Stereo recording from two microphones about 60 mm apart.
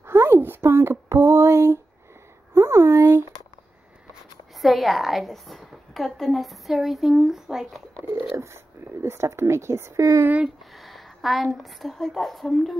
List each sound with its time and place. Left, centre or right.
0.0 s a sound: right
4.6 s a woman's voice: centre
9.0 s speech: right
10.8 s a woman's voice: centre